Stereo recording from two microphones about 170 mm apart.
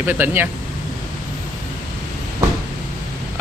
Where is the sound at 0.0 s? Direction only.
10° right (ahead or behind).